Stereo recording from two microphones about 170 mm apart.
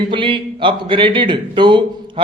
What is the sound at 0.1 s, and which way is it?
Speech, 30° right (ahead or behind).